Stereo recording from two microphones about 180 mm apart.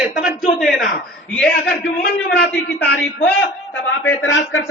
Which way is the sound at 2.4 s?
70° left (ahead or behind).